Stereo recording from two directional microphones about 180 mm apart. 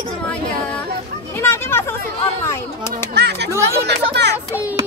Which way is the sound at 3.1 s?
70° right (ahead or behind).